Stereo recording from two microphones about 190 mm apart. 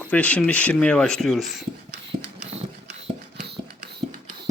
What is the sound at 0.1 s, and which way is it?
Speech, 5° left (ahead or behind).